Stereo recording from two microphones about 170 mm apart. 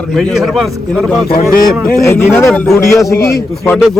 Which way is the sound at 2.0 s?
15° left (ahead or behind).